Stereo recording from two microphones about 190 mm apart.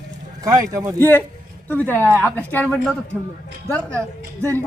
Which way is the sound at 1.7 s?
10° left (ahead or behind).